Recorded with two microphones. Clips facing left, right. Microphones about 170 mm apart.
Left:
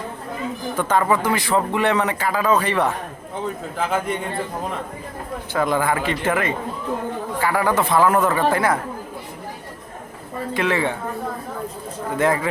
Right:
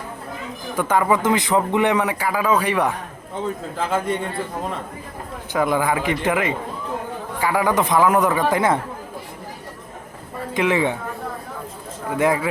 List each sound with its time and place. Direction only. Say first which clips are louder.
0.8 s a man's voice: right 1 dB; 10° right (ahead or behind)
3.8 s a man's voice: even; centre (ahead or behind)
5.5 s a man's voice: right 1 dB; 15° right (ahead or behind)
10.5 s a man's voice: right 2 dB; 15° right (ahead or behind)
12.1 s a man's voice: right 1 dB; 10° right (ahead or behind)